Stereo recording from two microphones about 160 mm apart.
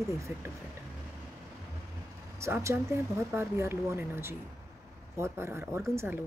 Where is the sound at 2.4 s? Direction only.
20° right (ahead or behind).